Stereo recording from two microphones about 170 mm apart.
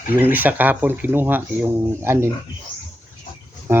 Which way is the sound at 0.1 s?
10° right (ahead or behind).